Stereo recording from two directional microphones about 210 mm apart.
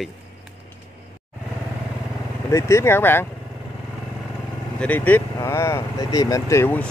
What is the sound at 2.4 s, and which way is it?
Speech, 15° left (ahead or behind).